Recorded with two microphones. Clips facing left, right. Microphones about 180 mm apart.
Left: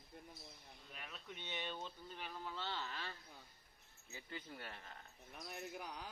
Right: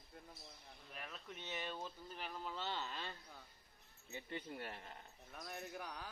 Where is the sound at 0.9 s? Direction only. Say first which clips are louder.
Right 2 dB; centre (ahead or behind); by 4.9 s 25° right (ahead or behind).